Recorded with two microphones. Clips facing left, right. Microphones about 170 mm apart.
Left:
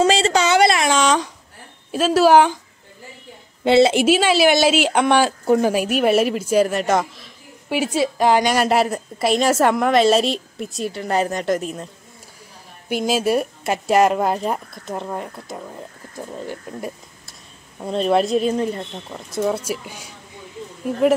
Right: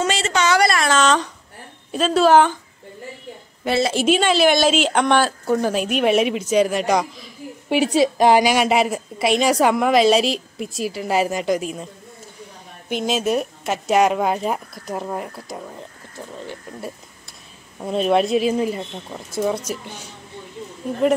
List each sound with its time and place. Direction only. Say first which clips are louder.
0.0 s a sound: left 4 dB; 30° left (ahead or behind)
0.8 s a sound: even; 10° left (ahead or behind)
1.9 s speech: left 1 dB; 5° left (ahead or behind)
3.6 s a woman's voice: left 6 dB; 25° left (ahead or behind)
4.0 s speech: left 1 dB; 5° left (ahead or behind)
7.7 s a woman's voice: right 3 dB; 20° right (ahead or behind)
8.5 s a woman's voice: even; centre (ahead or behind)
12.9 s a woman's voice: left 2 dB; 5° left (ahead or behind)
17.7 s a woman's voice: even; 5° right (ahead or behind)